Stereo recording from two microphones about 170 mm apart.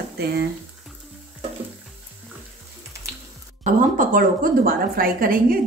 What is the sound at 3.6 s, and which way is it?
A woman's voice, 50° right (ahead or behind).